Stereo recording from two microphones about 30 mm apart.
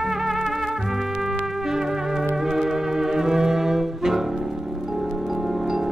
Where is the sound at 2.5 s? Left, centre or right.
Centre.